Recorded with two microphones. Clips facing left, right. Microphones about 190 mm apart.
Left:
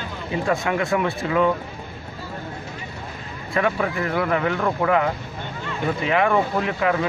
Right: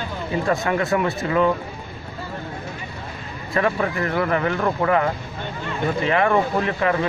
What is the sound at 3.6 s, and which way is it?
Speech, centre (ahead or behind).